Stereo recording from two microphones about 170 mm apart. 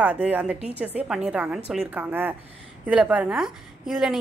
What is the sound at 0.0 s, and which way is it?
A woman's voice, 10° right (ahead or behind).